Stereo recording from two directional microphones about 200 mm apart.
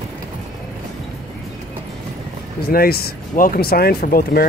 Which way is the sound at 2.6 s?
50° left (ahead or behind).